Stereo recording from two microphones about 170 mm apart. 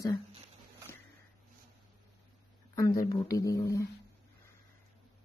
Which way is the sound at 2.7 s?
20° left (ahead or behind).